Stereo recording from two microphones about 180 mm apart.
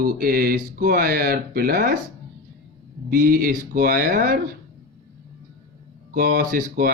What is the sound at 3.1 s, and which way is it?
Speech, 55° right (ahead or behind).